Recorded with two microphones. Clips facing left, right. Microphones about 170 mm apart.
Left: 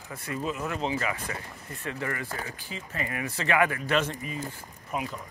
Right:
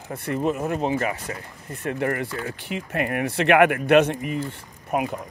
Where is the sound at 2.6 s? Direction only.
65° right (ahead or behind).